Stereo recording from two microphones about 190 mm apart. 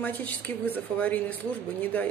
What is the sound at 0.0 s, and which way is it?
Speech, 10° left (ahead or behind).